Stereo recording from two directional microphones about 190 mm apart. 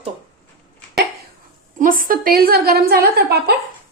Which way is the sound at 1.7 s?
45° right (ahead or behind).